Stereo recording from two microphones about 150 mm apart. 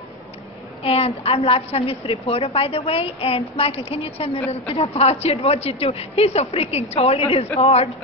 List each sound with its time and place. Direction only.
0.8 s a woman's voice: 40° left (ahead or behind)